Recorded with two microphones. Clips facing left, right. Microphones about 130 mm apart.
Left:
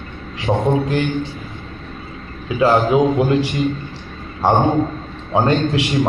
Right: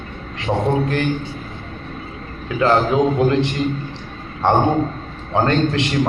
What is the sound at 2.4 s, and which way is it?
Speech, 15° left (ahead or behind).